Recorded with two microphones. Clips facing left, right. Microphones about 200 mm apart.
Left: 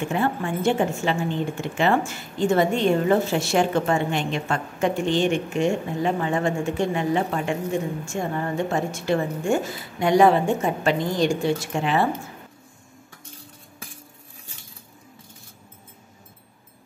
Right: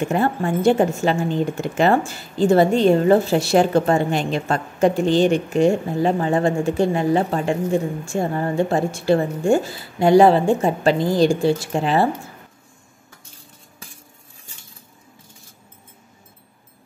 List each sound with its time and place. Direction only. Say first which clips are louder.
0.1 s a woman's voice: right 4 dB; 40° right (ahead or behind)